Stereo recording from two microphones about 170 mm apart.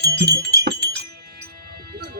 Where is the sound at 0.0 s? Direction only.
75° right (ahead or behind).